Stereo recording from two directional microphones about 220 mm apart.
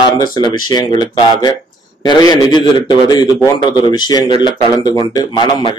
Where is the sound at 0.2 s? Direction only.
20° left (ahead or behind).